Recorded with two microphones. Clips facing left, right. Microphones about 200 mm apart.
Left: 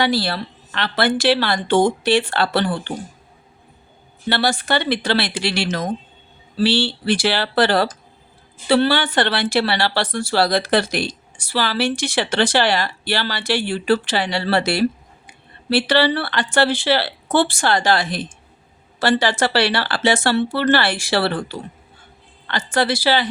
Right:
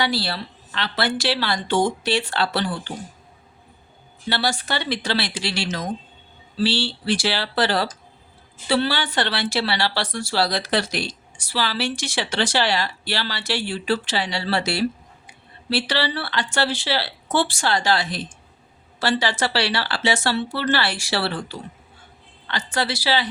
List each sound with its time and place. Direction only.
0.0 s speech: 50° left (ahead or behind)
4.3 s speech: 55° left (ahead or behind)
22.4 s speech: 50° left (ahead or behind)